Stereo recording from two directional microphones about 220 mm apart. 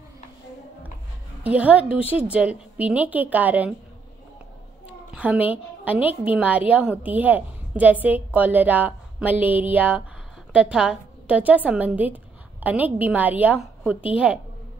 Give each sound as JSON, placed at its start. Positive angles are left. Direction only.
{"t": 1.4, "sound": "a woman's voice", "side_deg": -5}
{"t": 4.8, "sound": "a woman's voice", "side_deg": -5}